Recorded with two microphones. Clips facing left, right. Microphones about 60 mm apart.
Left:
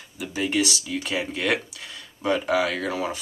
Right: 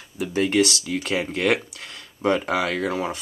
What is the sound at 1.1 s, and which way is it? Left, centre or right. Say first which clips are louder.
Speech: right 3 dB; centre.